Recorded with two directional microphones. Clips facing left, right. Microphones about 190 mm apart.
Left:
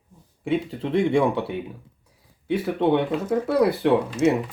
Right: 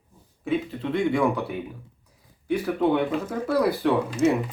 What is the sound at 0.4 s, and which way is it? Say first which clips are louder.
Speech: left 1 dB; 30° left (ahead or behind).